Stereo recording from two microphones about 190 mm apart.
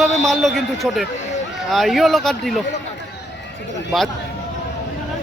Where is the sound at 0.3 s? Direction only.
Centre (ahead or behind).